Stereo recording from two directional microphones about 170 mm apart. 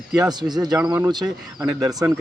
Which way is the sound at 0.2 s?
25° right (ahead or behind).